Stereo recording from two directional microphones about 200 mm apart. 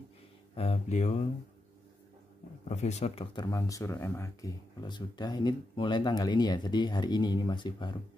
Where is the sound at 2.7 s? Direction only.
35° left (ahead or behind).